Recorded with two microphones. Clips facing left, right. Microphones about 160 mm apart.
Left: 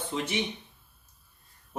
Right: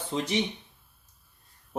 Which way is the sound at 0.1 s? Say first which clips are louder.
Right 2 dB; 30° right (ahead or behind).